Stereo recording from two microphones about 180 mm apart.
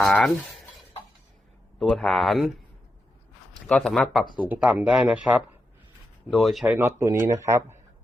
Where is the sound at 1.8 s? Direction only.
Centre (ahead or behind).